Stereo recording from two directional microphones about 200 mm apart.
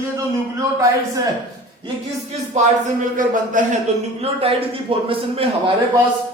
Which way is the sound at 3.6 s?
40° right (ahead or behind).